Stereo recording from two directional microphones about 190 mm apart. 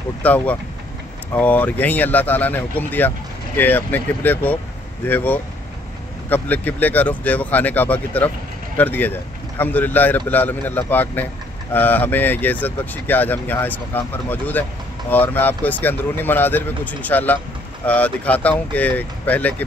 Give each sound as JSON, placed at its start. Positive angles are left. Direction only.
{"t": 0.2, "sound": "speech", "side_deg": 10}